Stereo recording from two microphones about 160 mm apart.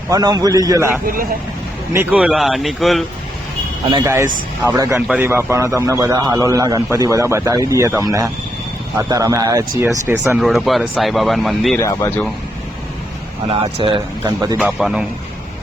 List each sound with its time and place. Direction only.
0.1 s a man's voice: 25° right (ahead or behind)
1.0 s a man's voice: 60° right (ahead or behind)
1.9 s speech: 10° right (ahead or behind)
4.0 s a man's voice: 15° right (ahead or behind)
10.3 s speech: centre (ahead or behind)
11.8 s speech: 20° left (ahead or behind)
13.5 s speech: 35° right (ahead or behind)
14.6 s speech: 5° right (ahead or behind)